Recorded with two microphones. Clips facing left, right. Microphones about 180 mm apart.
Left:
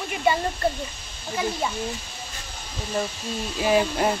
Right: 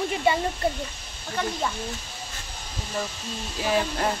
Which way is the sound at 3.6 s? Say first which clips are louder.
Left 4 dB; 15° left (ahead or behind).